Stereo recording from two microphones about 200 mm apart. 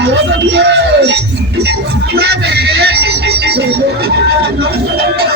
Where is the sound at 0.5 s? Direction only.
60° right (ahead or behind).